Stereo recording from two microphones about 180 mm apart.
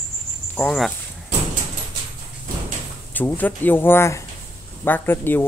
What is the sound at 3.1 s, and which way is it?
Speech, 10° left (ahead or behind).